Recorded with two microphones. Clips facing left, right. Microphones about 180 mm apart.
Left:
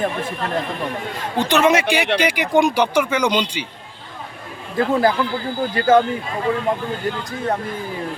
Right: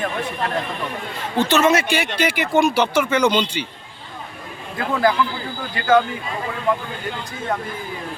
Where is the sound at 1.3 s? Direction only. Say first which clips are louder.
Even; 15° left (ahead or behind).